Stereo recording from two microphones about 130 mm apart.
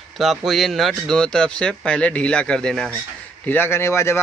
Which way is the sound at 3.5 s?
15° left (ahead or behind).